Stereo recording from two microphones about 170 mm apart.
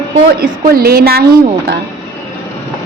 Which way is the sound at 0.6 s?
60° right (ahead or behind).